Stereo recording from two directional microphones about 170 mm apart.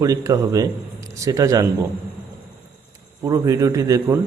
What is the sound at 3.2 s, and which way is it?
Speech, 20° right (ahead or behind).